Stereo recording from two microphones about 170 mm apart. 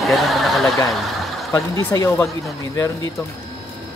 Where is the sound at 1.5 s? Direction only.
20° left (ahead or behind).